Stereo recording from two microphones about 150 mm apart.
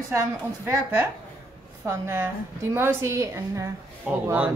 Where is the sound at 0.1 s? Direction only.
20° right (ahead or behind).